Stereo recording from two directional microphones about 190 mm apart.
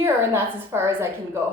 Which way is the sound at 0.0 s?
10° right (ahead or behind).